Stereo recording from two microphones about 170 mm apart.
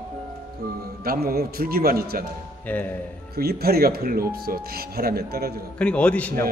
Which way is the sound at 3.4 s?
65° right (ahead or behind).